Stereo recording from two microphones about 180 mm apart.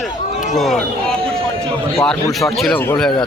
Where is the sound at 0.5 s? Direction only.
Centre (ahead or behind).